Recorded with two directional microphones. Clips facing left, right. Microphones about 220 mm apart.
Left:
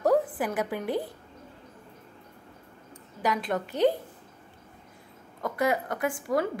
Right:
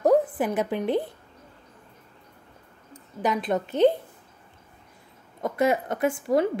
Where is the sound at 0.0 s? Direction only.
20° right (ahead or behind).